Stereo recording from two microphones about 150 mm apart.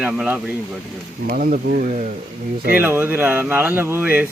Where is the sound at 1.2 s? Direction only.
75° right (ahead or behind); by 2.1 s 55° right (ahead or behind).